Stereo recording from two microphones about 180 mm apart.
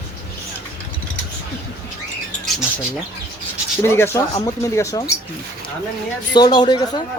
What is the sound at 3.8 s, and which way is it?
Speech, 15° left (ahead or behind).